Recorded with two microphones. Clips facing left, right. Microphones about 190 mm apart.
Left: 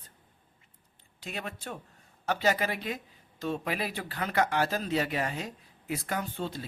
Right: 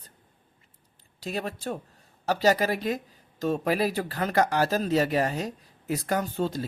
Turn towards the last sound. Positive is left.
turn(degrees=-40)  # may be behind; listen again after turning